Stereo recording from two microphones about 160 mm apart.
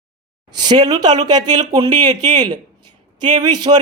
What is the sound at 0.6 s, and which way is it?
A man's voice, 25° right (ahead or behind).